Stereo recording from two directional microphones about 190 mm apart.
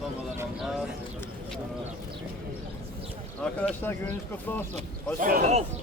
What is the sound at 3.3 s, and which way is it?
Speech, 5° left (ahead or behind).